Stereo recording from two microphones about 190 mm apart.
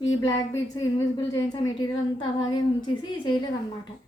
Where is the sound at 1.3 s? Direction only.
20° left (ahead or behind).